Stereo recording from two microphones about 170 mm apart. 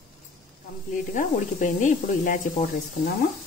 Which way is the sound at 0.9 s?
45° left (ahead or behind).